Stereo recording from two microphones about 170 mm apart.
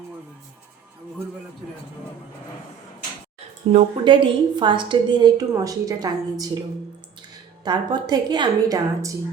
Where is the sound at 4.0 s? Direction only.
30° right (ahead or behind).